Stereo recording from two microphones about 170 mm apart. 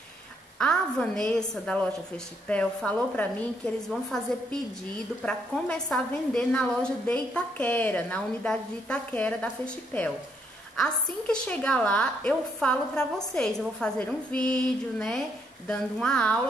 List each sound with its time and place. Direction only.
0.6 s a woman's voice: 5° left (ahead or behind)
2.4 s a woman's voice: 5° left (ahead or behind)